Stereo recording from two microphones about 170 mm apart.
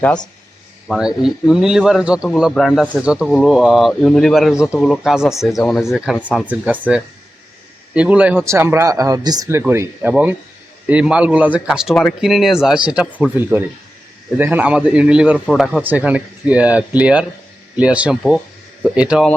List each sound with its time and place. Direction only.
0.9 s a man's voice: 5° right (ahead or behind)
7.9 s a man's voice: 5° right (ahead or behind)
15.8 s a man's voice: 10° right (ahead or behind)